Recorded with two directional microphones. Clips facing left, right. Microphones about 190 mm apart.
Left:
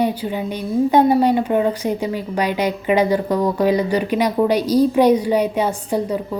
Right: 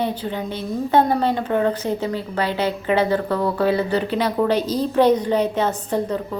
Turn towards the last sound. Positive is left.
turn(degrees=10)  # may be behind; listen again after turning